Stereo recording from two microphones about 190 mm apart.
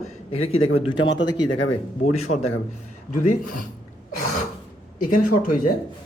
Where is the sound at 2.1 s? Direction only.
35° left (ahead or behind).